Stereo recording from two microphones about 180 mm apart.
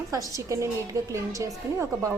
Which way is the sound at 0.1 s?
20° right (ahead or behind).